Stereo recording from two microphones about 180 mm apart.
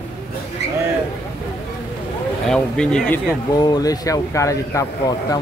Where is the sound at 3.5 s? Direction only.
20° left (ahead or behind).